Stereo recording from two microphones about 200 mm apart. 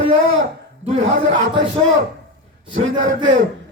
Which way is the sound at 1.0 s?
70° right (ahead or behind).